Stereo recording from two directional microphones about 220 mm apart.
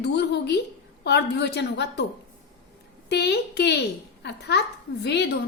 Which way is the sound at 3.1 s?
50° left (ahead or behind).